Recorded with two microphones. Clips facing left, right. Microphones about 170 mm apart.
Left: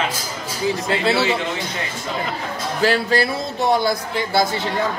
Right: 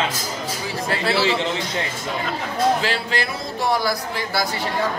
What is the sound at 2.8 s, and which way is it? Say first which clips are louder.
Speech: left 6 dB; 45° left (ahead or behind).